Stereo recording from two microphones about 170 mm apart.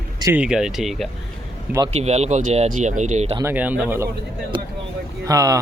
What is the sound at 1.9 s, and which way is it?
Speech, 40° right (ahead or behind).